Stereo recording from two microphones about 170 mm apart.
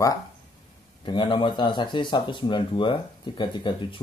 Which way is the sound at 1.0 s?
30° left (ahead or behind).